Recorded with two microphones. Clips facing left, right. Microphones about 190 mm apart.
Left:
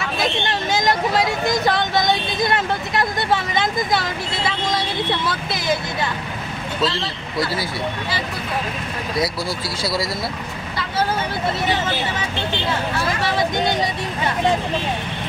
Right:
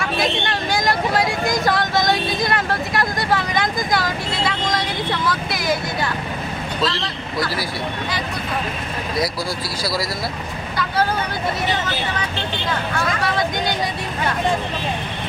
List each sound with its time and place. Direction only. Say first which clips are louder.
0.5 s speech: left 1 dB; 20° left (ahead or behind)
2.0 s vehicle: even; 20° left (ahead or behind)
6.9 s speech: even; 25° left (ahead or behind)
12.9 s speech: even; 25° left (ahead or behind)